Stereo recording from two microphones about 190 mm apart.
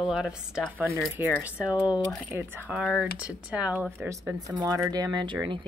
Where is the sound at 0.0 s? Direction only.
5° right (ahead or behind).